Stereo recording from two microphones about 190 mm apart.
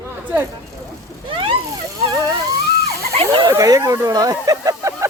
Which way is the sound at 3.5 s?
20° right (ahead or behind).